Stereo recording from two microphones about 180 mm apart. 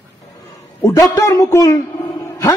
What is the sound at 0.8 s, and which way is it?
A man's voice, 15° left (ahead or behind).